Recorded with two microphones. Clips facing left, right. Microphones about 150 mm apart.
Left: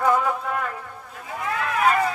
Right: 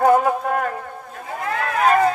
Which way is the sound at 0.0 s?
45° right (ahead or behind).